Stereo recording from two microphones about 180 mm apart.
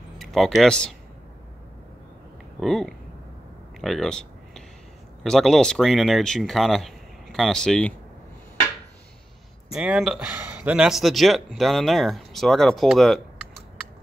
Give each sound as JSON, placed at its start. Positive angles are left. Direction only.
{"t": 0.2, "sound": "speech", "side_deg": 0}
{"t": 2.6, "sound": "speech", "side_deg": 0}
{"t": 3.8, "sound": "a sound", "side_deg": 0}
{"t": 5.2, "sound": "speech", "side_deg": 0}
{"t": 9.8, "sound": "speech", "side_deg": -5}